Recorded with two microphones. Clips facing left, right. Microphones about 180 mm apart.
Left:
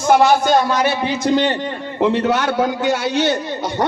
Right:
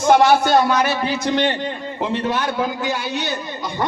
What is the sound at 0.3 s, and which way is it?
Speech, 5° right (ahead or behind).